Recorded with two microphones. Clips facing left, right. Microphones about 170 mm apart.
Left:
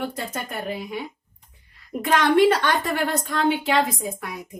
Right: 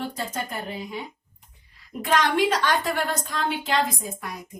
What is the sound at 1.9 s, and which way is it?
A woman's voice, 60° left (ahead or behind).